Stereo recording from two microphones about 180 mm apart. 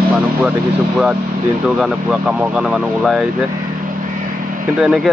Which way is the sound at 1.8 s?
5° right (ahead or behind).